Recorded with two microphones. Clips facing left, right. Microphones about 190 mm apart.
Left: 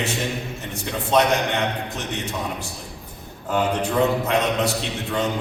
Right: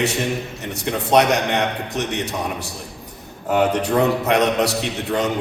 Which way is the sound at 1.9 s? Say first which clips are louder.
Right 5 dB; 70° right (ahead or behind).